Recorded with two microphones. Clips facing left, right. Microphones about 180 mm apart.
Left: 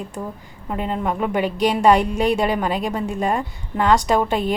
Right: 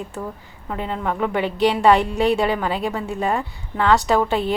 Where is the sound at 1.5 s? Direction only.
45° left (ahead or behind).